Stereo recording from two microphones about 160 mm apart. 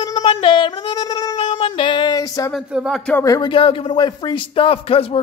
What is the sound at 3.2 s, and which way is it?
Speech, 25° left (ahead or behind).